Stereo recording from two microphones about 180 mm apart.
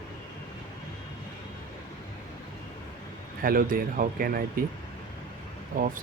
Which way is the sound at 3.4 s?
55° right (ahead or behind).